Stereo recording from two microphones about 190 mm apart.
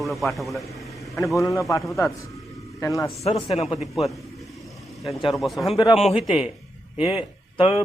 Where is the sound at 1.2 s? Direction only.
15° left (ahead or behind).